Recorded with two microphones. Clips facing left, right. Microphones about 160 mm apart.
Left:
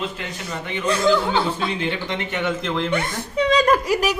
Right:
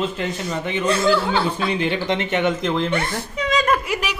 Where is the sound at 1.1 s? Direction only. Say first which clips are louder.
Even; 15° left (ahead or behind).